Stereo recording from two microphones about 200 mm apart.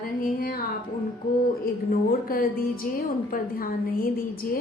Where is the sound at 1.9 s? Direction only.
45° left (ahead or behind).